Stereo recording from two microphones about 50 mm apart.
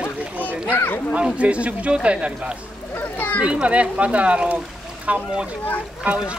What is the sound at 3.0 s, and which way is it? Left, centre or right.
Speech, left.